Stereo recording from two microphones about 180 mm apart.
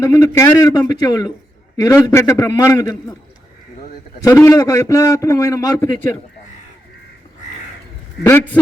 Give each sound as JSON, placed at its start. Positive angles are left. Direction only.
{"t": 0.0, "sound": "a man's voice", "side_deg": 15}
{"t": 4.2, "sound": "a man's voice", "side_deg": 15}
{"t": 8.2, "sound": "a man's voice", "side_deg": 15}